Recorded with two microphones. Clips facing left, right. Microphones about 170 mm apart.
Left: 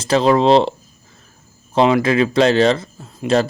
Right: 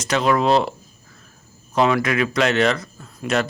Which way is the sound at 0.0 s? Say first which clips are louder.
Left 5 dB; 30° left (ahead or behind).